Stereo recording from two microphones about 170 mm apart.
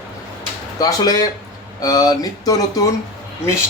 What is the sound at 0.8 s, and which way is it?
Speech, 20° left (ahead or behind).